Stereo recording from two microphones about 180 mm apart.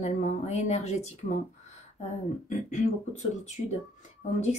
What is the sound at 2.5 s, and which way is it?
Speech, 40° left (ahead or behind).